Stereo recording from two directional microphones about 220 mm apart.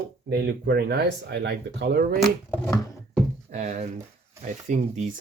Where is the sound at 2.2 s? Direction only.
Centre (ahead or behind).